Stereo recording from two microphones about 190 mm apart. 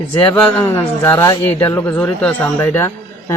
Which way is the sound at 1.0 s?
15° left (ahead or behind).